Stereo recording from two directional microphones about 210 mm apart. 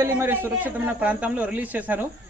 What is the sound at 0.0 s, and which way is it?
A woman's voice, 10° right (ahead or behind).